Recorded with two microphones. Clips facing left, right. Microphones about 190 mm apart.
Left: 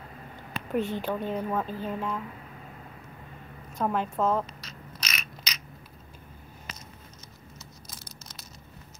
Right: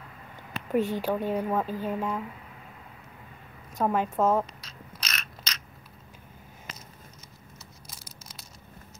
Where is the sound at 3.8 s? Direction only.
5° right (ahead or behind).